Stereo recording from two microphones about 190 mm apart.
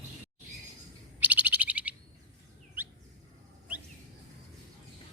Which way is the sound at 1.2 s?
10° right (ahead or behind).